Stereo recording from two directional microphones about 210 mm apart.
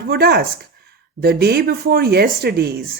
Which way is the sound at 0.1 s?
50° right (ahead or behind).